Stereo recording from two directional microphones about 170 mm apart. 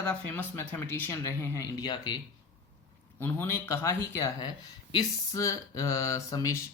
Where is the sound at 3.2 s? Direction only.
15° left (ahead or behind).